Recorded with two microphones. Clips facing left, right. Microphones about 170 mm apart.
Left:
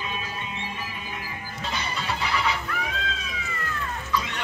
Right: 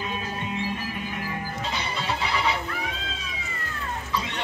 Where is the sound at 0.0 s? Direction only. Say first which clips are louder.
Right 3 dB; 50° right (ahead or behind).